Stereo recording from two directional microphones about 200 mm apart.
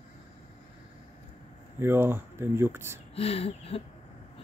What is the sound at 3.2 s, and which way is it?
Speech, 30° left (ahead or behind).